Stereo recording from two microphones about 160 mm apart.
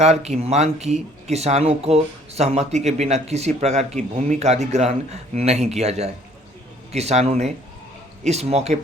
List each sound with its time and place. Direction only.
0.0 s speech: 45° right (ahead or behind)